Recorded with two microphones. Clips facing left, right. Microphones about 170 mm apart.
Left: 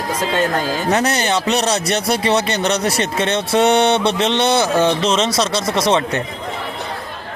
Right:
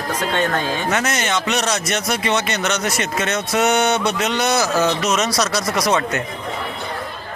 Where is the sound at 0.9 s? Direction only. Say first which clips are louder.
Left 6 dB; 35° left (ahead or behind).